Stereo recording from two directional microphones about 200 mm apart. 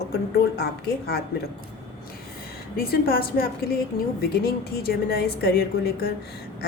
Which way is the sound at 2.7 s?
50° left (ahead or behind).